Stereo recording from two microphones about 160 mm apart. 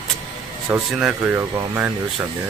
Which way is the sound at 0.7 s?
5° right (ahead or behind).